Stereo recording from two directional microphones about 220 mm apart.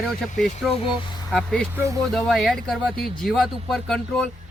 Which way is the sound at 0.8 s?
25° left (ahead or behind).